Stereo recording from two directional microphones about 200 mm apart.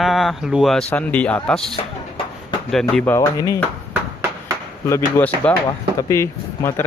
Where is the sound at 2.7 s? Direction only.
5° left (ahead or behind).